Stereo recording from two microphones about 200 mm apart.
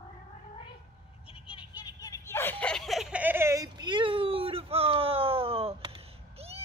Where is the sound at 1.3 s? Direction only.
25° left (ahead or behind); by 5.9 s 30° right (ahead or behind).